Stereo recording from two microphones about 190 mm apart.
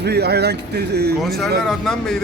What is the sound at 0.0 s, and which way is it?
Speech, 60° right (ahead or behind).